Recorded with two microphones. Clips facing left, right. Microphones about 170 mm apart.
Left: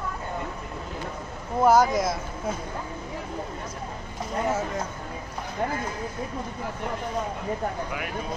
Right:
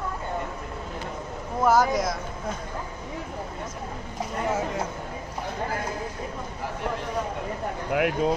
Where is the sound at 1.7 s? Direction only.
Centre (ahead or behind).